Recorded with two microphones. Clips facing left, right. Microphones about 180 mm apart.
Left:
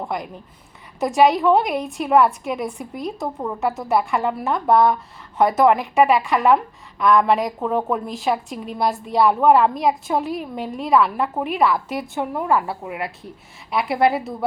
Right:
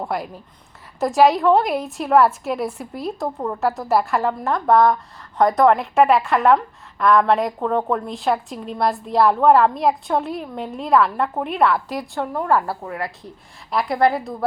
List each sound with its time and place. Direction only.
0.0 s a woman's voice: centre (ahead or behind)
12.8 s a woman's voice: 15° left (ahead or behind)
13.7 s a woman's voice: 5° left (ahead or behind)